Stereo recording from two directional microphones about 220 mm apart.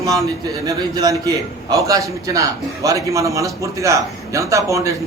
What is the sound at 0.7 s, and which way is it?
A man's voice, 15° right (ahead or behind).